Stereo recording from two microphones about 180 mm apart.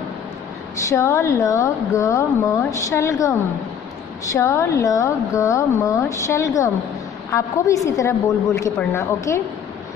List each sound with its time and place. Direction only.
0.8 s a woman's voice: 15° left (ahead or behind)